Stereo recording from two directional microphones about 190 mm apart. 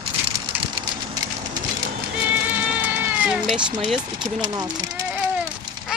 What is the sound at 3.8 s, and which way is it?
Speech, centre (ahead or behind).